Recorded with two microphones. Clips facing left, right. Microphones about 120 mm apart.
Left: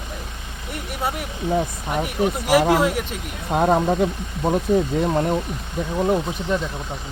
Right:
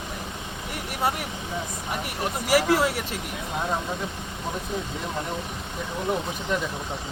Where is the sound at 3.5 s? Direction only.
65° left (ahead or behind).